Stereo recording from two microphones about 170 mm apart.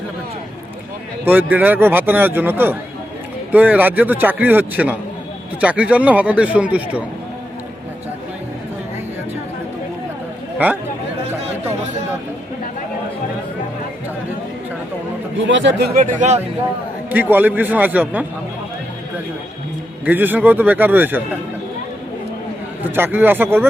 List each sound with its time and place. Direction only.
1.2 s a man's voice: 10° right (ahead or behind)
15.4 s speech: 90° right
16.0 s speech: 45° right (ahead or behind)
17.1 s a man's voice: 10° right (ahead or behind)
20.1 s a man's voice: 10° right (ahead or behind)
23.0 s a man's voice: 10° right (ahead or behind)